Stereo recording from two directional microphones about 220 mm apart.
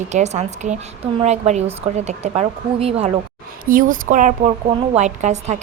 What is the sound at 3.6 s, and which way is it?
A woman's voice, 40° right (ahead or behind).